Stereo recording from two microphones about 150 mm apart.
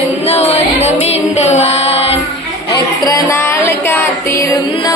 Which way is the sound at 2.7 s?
20° left (ahead or behind).